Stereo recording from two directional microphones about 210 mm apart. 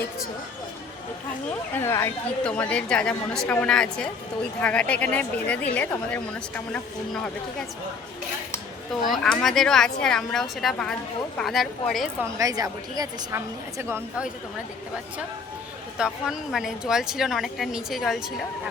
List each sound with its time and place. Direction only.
1.5 s a woman's voice: 10° left (ahead or behind)
9.1 s a woman's voice: centre (ahead or behind)
12.4 s a woman's voice: 15° right (ahead or behind)
16.0 s a woman's voice: 5° right (ahead or behind)